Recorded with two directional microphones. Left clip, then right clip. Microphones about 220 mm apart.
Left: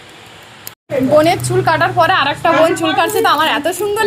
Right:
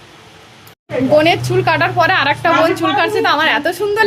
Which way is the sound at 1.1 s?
15° right (ahead or behind).